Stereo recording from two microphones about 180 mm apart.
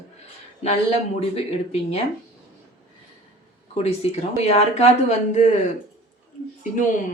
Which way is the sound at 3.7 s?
35° left (ahead or behind).